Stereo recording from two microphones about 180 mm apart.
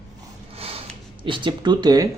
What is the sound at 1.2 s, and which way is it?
Speech, 30° right (ahead or behind).